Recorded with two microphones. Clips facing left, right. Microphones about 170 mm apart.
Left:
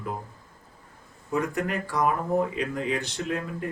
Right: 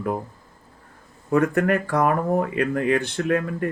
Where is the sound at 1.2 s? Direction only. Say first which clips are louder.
Right 8 dB; 60° right (ahead or behind).